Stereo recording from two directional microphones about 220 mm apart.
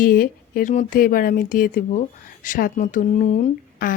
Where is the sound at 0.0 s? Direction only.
40° left (ahead or behind).